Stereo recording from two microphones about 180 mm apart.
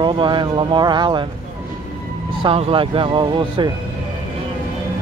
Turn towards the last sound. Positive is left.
turn(degrees=-25)  # may be behind; listen again after turning